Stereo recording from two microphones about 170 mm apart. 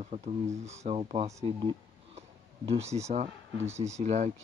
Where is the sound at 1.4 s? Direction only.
35° right (ahead or behind).